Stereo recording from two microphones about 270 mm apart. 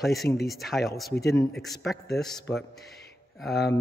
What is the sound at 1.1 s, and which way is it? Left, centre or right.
Speech, left.